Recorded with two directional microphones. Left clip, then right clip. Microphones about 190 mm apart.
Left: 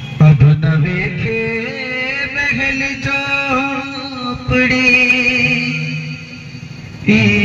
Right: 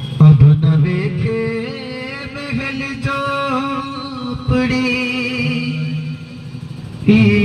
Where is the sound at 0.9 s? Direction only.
45° right (ahead or behind).